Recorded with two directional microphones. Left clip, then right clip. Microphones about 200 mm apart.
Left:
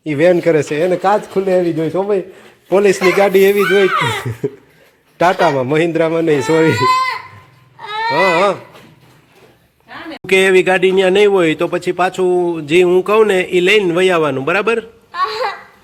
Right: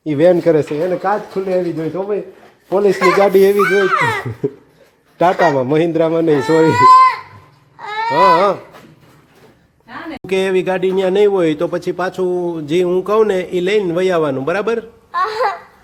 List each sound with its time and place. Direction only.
0.0 s a man's voice: 5° right (ahead or behind)
0.8 s speech: 20° left (ahead or behind)
3.0 s a man's voice: 10° right (ahead or behind)
7.8 s baby cry: 10° right (ahead or behind)
10.2 s speech: 5° left (ahead or behind)